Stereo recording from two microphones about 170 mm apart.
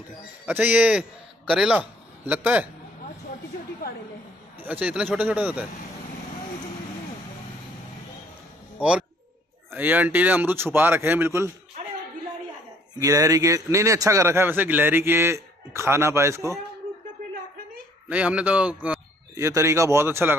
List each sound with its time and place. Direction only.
0.5 s a man's voice: 10° right (ahead or behind)
4.6 s a man's voice: 10° right (ahead or behind)
9.7 s a man's voice: 10° right (ahead or behind)
13.0 s a man's voice: 20° right (ahead or behind)
18.0 s a man's voice: 5° right (ahead or behind)